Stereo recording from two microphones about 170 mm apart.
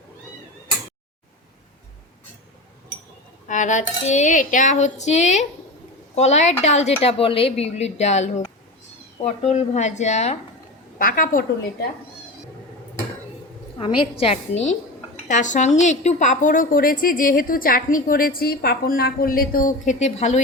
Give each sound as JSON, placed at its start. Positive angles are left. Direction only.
{"t": 3.5, "sound": "a woman's voice", "side_deg": 45}
{"t": 10.9, "sound": "a woman's voice", "side_deg": 55}
{"t": 13.7, "sound": "a woman's voice", "side_deg": 30}